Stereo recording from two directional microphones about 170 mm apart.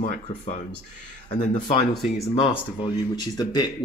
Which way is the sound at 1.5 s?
30° left (ahead or behind).